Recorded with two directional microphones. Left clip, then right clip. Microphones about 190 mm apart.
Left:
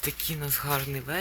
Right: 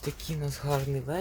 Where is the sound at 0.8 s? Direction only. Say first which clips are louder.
Left 1 dB; 20° right (ahead or behind).